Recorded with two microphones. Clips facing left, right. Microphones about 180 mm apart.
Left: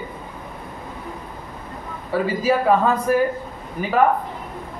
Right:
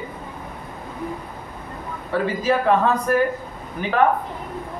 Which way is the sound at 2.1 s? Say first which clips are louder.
Left 1 dB; 5° left (ahead or behind).